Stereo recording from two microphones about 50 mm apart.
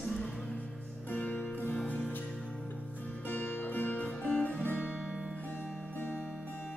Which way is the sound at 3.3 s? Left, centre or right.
Left.